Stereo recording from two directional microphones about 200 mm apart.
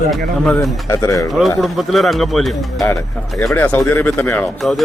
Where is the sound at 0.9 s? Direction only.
15° left (ahead or behind).